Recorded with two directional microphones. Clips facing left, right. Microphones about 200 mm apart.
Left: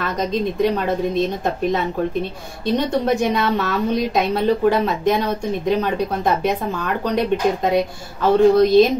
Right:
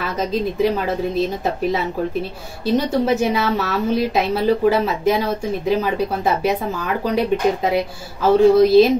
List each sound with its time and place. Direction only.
0.0 s a woman's voice: 5° right (ahead or behind)